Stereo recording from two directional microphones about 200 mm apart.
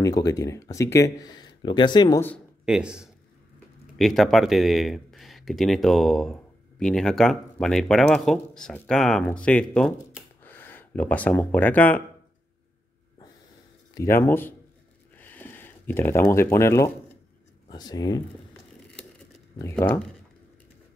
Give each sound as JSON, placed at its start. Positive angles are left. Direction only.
{"t": 0.0, "sound": "speech", "side_deg": 15}
{"t": 2.6, "sound": "speech", "side_deg": -5}
{"t": 13.9, "sound": "speech", "side_deg": 15}
{"t": 15.1, "sound": "a sound", "side_deg": 10}
{"t": 17.6, "sound": "speech", "side_deg": 20}
{"t": 19.6, "sound": "speech", "side_deg": 10}